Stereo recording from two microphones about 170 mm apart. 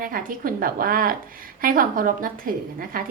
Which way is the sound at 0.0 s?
55° right (ahead or behind).